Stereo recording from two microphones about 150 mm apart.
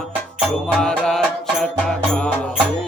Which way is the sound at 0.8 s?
5° left (ahead or behind).